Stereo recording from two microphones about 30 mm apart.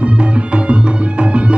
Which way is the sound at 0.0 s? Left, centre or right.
Right.